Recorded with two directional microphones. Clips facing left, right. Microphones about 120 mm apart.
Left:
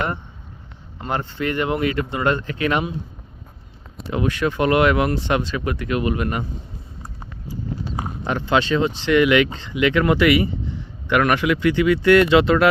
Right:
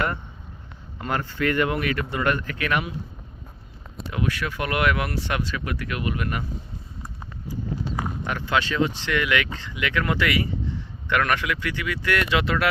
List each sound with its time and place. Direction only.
1.0 s speech: 25° left (ahead or behind)
4.1 s speech: 25° left (ahead or behind)
8.2 s speech: 25° left (ahead or behind)